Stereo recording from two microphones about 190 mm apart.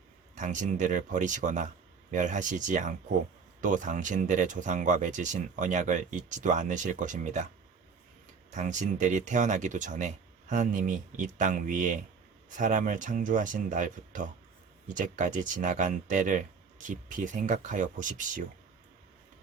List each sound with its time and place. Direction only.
0.3 s speech: 40° right (ahead or behind)
8.5 s speech: 40° right (ahead or behind)